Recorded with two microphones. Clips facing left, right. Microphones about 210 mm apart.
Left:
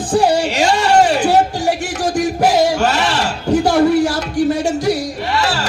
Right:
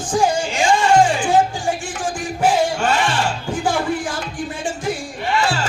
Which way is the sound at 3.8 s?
70° left (ahead or behind).